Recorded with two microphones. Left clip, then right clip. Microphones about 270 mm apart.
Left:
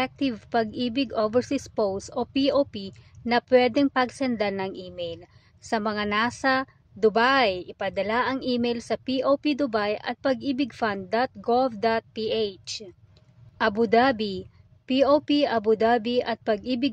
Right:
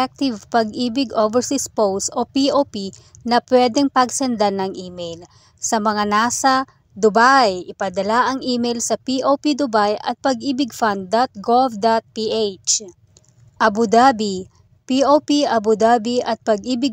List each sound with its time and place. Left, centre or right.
0.0 s a woman's voice: centre